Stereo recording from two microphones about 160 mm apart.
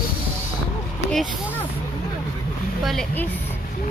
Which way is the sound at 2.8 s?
Centre (ahead or behind).